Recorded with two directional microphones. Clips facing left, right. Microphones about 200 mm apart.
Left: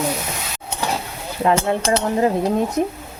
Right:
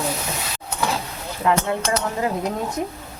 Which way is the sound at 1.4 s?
30° left (ahead or behind).